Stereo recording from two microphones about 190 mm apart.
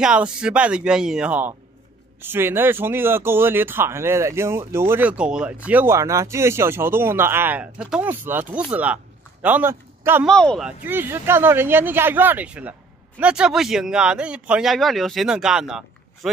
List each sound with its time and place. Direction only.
0.0 s a man's voice: 5° right (ahead or behind)
10.2 s speech: 5° left (ahead or behind)
10.9 s speech: 10° right (ahead or behind)